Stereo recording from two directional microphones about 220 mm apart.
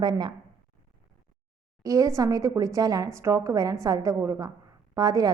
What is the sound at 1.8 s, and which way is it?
A woman's voice, 15° right (ahead or behind).